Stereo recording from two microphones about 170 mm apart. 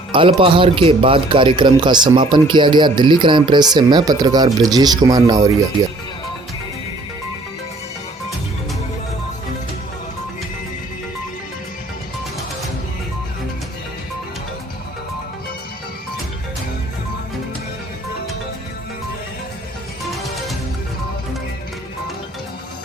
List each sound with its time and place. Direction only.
0.1 s a man's voice: 30° right (ahead or behind)